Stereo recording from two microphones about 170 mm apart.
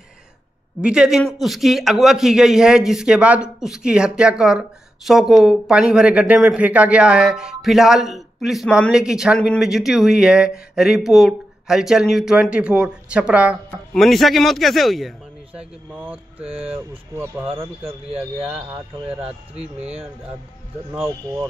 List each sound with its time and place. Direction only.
0.8 s speech: 5° right (ahead or behind)
15.9 s speech: 10° right (ahead or behind)
19.8 s speech: 35° right (ahead or behind)
20.9 s speech: centre (ahead or behind)